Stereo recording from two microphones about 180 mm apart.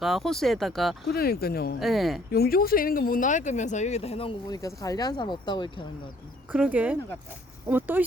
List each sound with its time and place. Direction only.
0.0 s speech: centre (ahead or behind)
1.0 s speech: 60° left (ahead or behind)
1.8 s speech: centre (ahead or behind)
2.3 s speech: 55° left (ahead or behind); by 5.9 s 25° left (ahead or behind)
6.5 s speech: 10° right (ahead or behind)